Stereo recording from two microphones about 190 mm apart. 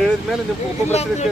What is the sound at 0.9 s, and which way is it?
Speech, 35° left (ahead or behind).